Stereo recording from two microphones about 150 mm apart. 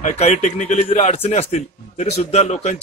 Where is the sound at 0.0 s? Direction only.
50° left (ahead or behind).